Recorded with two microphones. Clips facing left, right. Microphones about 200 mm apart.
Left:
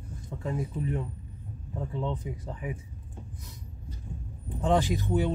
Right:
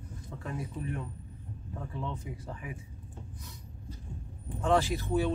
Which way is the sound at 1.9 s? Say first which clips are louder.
Left 6 dB; 20° left (ahead or behind).